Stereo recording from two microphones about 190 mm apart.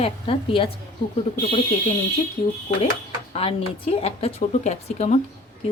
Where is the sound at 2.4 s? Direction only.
45° left (ahead or behind).